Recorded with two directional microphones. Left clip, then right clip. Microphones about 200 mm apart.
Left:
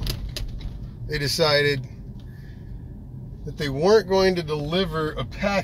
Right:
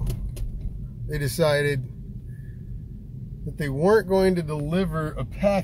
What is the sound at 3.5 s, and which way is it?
Speech, 25° right (ahead or behind).